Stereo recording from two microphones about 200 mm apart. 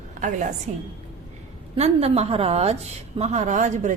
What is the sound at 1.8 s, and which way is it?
A woman's voice, 30° right (ahead or behind).